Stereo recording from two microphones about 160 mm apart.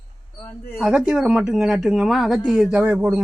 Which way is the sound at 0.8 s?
5° right (ahead or behind).